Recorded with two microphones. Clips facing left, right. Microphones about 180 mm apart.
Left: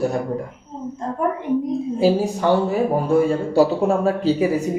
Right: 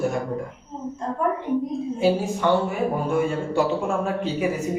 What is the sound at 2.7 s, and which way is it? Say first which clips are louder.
Speech: left 5 dB; 35° left (ahead or behind).